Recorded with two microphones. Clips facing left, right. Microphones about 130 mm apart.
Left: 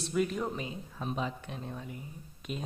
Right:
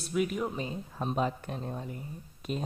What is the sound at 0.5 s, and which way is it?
Speech, 35° right (ahead or behind).